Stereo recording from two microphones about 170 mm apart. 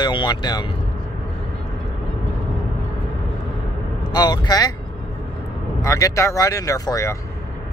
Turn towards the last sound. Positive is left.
turn(degrees=20)  # may be behind; listen again after turning